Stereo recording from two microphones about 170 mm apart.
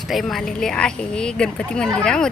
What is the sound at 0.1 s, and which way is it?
Speech, centre (ahead or behind).